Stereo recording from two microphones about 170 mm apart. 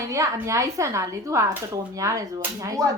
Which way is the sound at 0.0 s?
20° right (ahead or behind).